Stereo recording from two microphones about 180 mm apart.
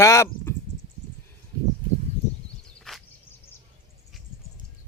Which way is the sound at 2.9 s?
5° left (ahead or behind).